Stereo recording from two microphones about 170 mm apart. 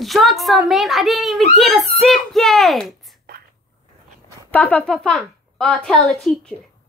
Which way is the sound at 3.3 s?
65° right (ahead or behind).